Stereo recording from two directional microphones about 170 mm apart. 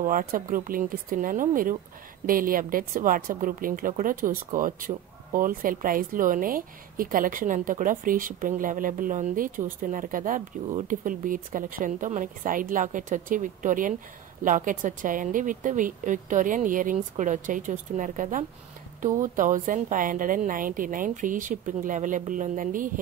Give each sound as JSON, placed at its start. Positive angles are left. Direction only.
{"t": 0.0, "sound": "a woman's voice", "side_deg": -55}